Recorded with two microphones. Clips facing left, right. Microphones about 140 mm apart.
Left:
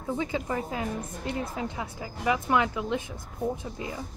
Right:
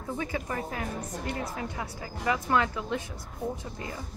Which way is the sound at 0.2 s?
15° left (ahead or behind).